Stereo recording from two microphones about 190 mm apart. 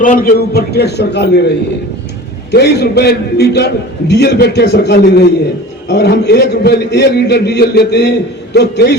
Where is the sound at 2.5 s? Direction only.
60° left (ahead or behind).